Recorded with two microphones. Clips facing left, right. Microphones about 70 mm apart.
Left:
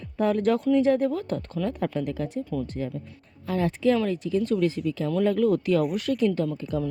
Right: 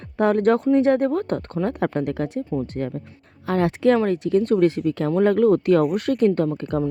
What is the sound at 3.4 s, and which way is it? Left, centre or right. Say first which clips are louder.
A woman's voice: right 5 dB; right.